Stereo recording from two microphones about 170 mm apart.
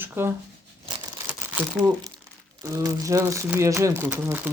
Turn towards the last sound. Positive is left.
turn(degrees=-10)  # may be behind; listen again after turning